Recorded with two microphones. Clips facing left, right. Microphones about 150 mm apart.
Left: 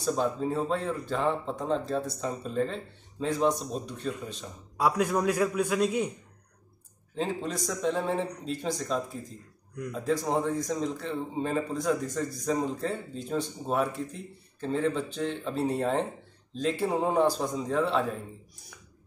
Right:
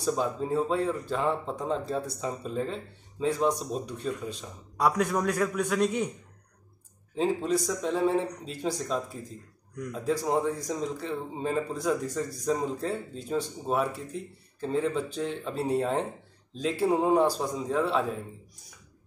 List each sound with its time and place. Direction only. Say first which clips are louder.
0.0 s a man's voice: left 1 dB; 5° right (ahead or behind)
7.2 s a man's voice: right 5 dB; 5° right (ahead or behind)